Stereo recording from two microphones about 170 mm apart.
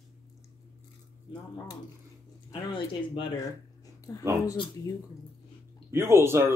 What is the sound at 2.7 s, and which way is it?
Speech, 30° left (ahead or behind).